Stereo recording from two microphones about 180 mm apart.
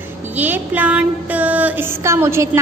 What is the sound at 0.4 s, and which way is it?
A woman's voice, 10° right (ahead or behind).